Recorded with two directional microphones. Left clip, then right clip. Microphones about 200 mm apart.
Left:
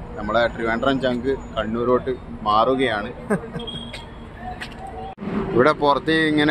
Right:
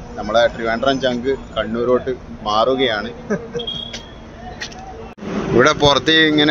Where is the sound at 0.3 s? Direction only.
Centre (ahead or behind).